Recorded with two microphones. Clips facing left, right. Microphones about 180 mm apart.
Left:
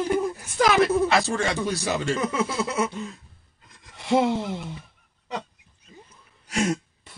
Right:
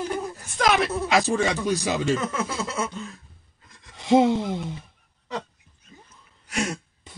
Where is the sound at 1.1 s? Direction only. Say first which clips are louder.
Right 2 dB; 15° right (ahead or behind).